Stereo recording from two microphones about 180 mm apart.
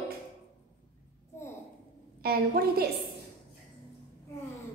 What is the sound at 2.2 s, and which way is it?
Speech, 60° right (ahead or behind).